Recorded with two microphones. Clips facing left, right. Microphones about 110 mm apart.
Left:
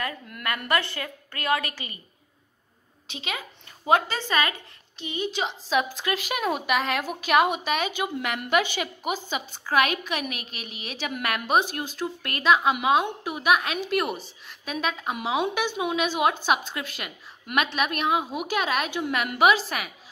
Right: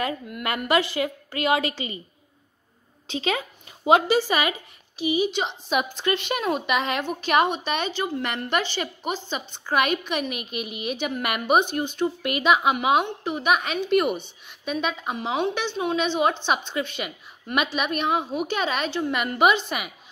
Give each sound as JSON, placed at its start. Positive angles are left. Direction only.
{"t": 0.9, "sound": "a woman's voice", "side_deg": -20}
{"t": 3.1, "sound": "a woman's voice", "side_deg": -35}
{"t": 3.8, "sound": "a woman's voice", "side_deg": -15}
{"t": 13.0, "sound": "a woman's voice", "side_deg": 5}